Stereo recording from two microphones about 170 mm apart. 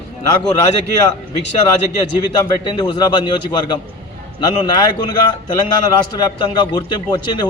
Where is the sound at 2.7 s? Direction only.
25° left (ahead or behind).